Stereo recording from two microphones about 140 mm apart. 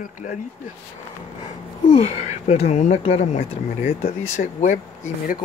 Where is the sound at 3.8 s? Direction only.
80° left; by 5.4 s 65° left (ahead or behind).